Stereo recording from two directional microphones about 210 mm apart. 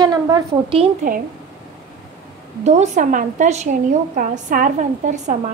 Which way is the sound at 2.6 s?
35° right (ahead or behind).